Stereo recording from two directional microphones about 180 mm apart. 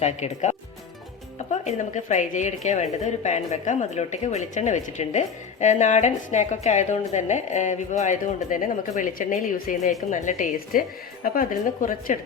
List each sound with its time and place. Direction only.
0.0 s speech: 40° left (ahead or behind)